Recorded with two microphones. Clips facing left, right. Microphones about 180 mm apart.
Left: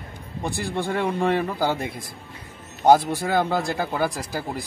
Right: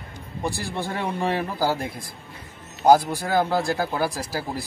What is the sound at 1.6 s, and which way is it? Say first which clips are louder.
Speech: even; centre (ahead or behind).